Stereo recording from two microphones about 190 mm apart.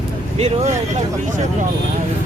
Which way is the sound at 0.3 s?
35° right (ahead or behind).